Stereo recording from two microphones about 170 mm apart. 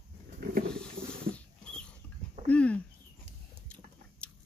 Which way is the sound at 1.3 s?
5° left (ahead or behind).